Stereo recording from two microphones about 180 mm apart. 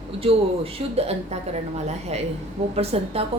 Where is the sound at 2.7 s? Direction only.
35° right (ahead or behind).